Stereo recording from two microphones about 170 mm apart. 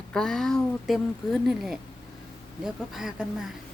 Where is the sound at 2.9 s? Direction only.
5° right (ahead or behind).